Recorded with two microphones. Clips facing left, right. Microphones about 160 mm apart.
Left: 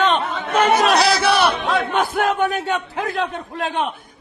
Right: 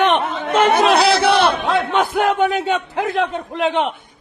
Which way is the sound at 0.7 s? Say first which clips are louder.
Right 2 dB; 55° right (ahead or behind).